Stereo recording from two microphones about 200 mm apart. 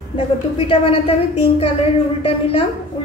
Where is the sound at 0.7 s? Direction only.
30° left (ahead or behind).